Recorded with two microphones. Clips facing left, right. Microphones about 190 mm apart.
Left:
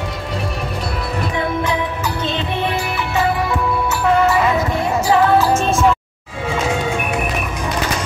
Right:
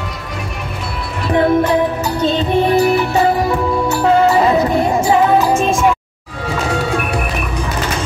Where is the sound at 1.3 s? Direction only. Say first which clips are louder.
Right 10 dB; 55° right (ahead or behind); by 5.0 s 35° right (ahead or behind).